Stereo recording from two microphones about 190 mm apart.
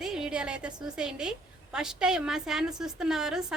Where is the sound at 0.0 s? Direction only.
5° right (ahead or behind).